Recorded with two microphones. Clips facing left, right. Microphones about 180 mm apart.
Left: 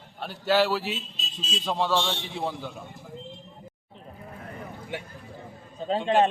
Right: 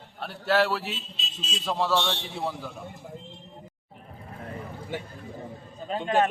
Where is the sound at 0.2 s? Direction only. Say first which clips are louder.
Left 1 dB; centre (ahead or behind).